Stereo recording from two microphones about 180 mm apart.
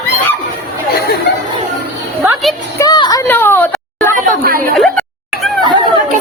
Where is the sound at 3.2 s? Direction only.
10° left (ahead or behind).